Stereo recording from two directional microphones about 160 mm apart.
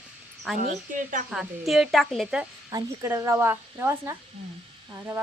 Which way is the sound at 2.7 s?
20° right (ahead or behind).